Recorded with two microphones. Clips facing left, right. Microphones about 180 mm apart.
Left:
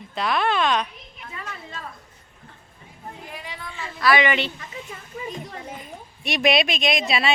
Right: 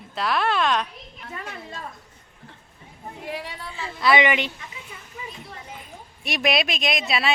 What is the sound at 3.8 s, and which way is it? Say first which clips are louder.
Speech: even; 25° right (ahead or behind).